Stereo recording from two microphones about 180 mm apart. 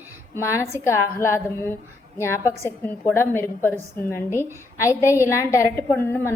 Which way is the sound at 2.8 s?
10° left (ahead or behind).